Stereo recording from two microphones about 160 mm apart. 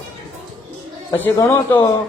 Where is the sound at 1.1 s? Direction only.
15° left (ahead or behind).